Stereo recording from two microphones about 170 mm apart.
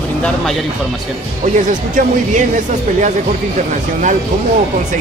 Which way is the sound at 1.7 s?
50° right (ahead or behind).